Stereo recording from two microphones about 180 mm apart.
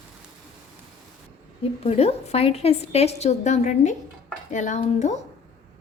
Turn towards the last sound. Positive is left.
turn(degrees=40)  # may be behind; listen again after turning